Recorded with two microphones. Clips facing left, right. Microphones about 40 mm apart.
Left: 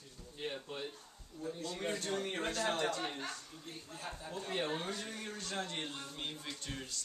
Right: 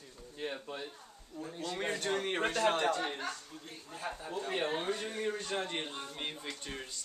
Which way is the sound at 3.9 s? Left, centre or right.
Right.